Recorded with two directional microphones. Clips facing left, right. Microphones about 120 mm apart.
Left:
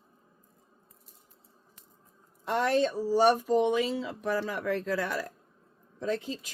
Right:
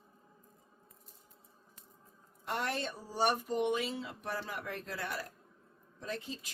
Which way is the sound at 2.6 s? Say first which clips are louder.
Left 12 dB; 90° left.